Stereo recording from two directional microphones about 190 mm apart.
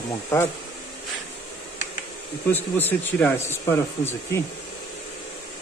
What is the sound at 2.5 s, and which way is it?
Speech, 10° left (ahead or behind).